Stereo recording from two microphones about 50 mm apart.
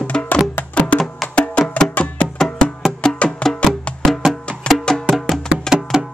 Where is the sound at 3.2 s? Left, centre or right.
Left.